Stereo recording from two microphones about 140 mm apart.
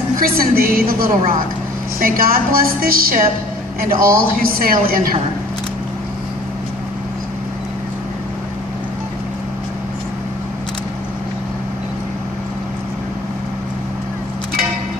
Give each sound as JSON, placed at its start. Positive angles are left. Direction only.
{"t": 0.2, "sound": "a woman's voice", "side_deg": -90}